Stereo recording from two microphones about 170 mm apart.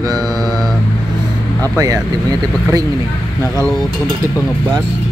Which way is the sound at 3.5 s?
5° left (ahead or behind).